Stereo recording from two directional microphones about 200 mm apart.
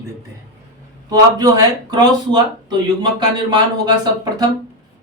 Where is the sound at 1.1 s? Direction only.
20° right (ahead or behind).